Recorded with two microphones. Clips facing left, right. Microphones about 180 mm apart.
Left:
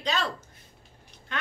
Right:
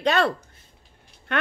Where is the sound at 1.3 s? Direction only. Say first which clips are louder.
Right 9 dB; 60° right (ahead or behind).